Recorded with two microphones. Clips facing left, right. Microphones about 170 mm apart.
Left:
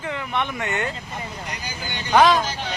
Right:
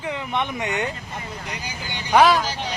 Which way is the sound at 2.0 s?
10° right (ahead or behind).